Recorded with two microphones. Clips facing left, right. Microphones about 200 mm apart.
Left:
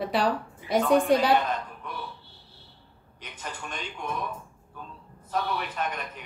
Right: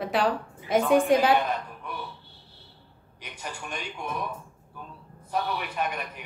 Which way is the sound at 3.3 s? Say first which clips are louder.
Right 1 dB; 10° right (ahead or behind).